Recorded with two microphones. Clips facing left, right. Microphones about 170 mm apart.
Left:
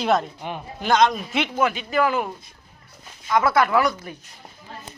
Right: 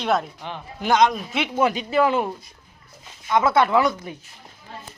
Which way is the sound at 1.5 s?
35° right (ahead or behind).